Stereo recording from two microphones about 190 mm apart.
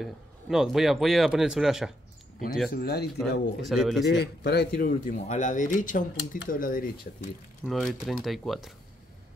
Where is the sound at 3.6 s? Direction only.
Centre (ahead or behind).